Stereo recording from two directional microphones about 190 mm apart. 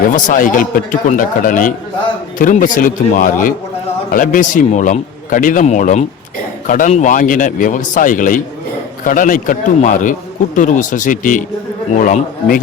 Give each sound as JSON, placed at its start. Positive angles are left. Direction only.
{"t": 0.3, "sound": "a man's voice", "side_deg": 45}